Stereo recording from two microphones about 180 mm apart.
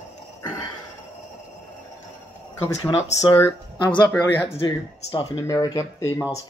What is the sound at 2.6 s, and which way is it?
Speech, 20° left (ahead or behind).